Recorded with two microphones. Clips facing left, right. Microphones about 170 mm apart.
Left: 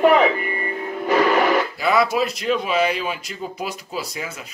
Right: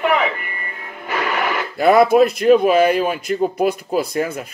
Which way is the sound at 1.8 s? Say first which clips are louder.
Right 7 dB; 55° right (ahead or behind).